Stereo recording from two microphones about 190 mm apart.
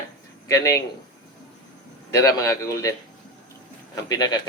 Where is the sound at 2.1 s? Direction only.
15° left (ahead or behind).